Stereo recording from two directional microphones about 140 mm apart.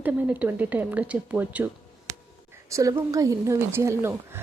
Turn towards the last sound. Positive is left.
turn(degrees=-20)  # may be behind; listen again after turning